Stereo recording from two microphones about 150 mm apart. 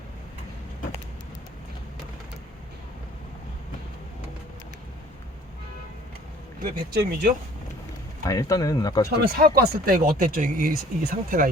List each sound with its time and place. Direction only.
6.6 s speech: 85° right
8.3 s speech: 20° left (ahead or behind)
9.0 s speech: 80° right